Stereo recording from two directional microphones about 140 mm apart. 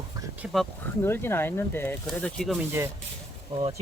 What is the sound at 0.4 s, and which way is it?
Speech, centre (ahead or behind).